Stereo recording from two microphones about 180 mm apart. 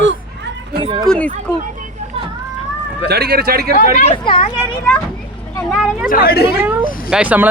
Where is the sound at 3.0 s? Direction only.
60° right (ahead or behind).